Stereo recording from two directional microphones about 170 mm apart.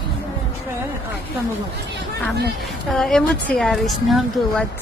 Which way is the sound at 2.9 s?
5° left (ahead or behind).